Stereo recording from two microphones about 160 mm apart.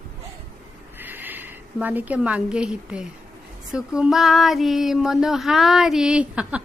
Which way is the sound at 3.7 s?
5° right (ahead or behind).